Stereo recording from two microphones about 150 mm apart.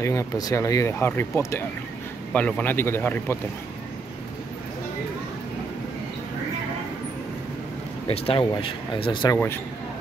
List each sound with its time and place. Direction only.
0.0 s speech: 20° left (ahead or behind)
2.3 s speech: 10° left (ahead or behind)
8.1 s speech: 35° left (ahead or behind)